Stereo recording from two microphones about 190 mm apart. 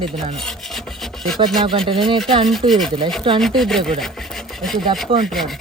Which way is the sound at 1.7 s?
30° right (ahead or behind).